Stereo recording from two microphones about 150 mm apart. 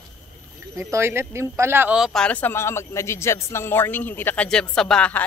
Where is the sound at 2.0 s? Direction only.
5° left (ahead or behind).